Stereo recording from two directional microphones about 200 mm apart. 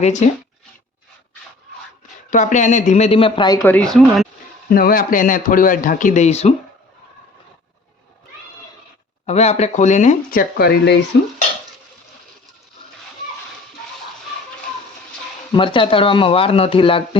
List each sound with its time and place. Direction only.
0.0 s speech: 35° left (ahead or behind)
2.3 s speech: 40° left (ahead or behind); by 3.8 s 15° left (ahead or behind)
3.8 s speech: centre (ahead or behind)
4.7 s a man's voice: 45° left (ahead or behind)
9.2 s speech: 30° left (ahead or behind)
10.6 s a man's voice: 50° left (ahead or behind)
11.1 s stir: 65° left (ahead or behind)
15.5 s speech: 25° left (ahead or behind)